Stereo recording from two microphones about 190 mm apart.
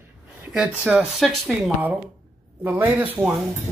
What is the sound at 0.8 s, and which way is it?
Speech, 5° right (ahead or behind).